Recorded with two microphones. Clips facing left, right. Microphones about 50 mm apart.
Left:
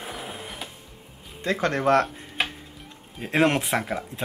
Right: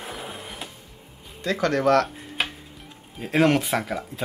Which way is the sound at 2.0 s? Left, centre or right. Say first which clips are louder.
Even; centre.